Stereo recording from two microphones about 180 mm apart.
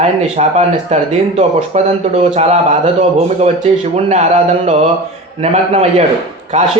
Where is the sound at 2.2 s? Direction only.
35° right (ahead or behind).